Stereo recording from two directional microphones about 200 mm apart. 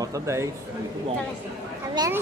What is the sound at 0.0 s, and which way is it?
Speech, 15° right (ahead or behind).